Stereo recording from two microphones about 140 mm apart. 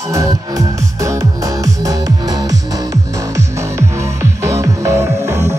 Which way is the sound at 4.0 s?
20° right (ahead or behind).